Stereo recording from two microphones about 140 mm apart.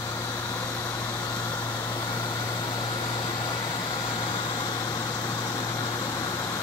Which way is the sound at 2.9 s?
30° left (ahead or behind).